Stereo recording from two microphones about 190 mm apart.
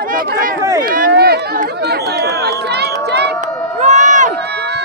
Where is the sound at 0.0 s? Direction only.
50° right (ahead or behind).